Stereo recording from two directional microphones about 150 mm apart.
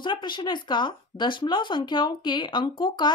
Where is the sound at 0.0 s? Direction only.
30° left (ahead or behind).